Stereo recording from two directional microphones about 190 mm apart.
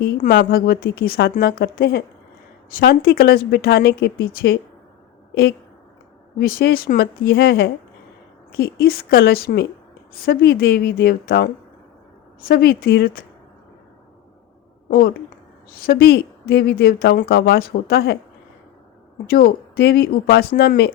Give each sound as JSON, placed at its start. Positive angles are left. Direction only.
{"t": 0.0, "sound": "a woman's voice", "side_deg": 50}
{"t": 12.5, "sound": "a woman's voice", "side_deg": 55}
{"t": 14.8, "sound": "speech", "side_deg": 50}
{"t": 19.3, "sound": "speech", "side_deg": 50}